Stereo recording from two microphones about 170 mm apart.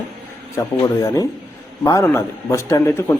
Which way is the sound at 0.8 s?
20° left (ahead or behind).